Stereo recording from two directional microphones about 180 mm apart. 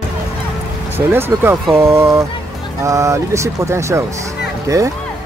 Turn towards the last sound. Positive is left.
turn(degrees=-20)  # may be behind; listen again after turning